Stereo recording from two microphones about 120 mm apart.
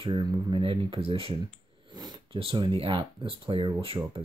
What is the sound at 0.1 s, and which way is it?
Speech, 35° right (ahead or behind).